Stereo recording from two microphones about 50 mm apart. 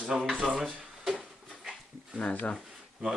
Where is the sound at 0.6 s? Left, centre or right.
Centre.